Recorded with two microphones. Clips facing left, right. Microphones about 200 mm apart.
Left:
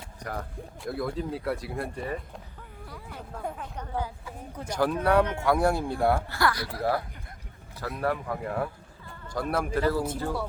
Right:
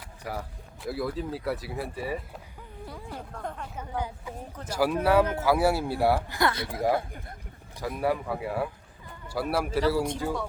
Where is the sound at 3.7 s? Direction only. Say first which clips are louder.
Even; 15° right (ahead or behind).